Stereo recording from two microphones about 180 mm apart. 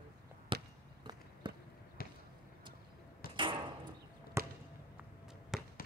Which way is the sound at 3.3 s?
30° right (ahead or behind).